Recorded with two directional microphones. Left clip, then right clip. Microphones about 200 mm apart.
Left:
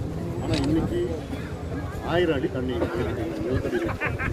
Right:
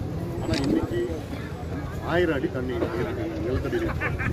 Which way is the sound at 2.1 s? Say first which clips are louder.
Even; 15° left (ahead or behind).